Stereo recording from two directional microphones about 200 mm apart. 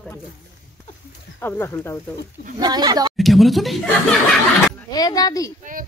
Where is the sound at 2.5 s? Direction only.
20° right (ahead or behind).